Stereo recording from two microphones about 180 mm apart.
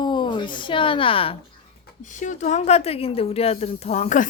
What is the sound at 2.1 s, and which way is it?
Speech, 45° left (ahead or behind).